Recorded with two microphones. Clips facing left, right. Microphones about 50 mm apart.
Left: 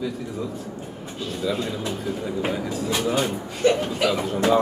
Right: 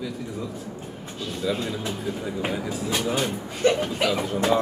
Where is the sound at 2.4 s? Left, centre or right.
Centre.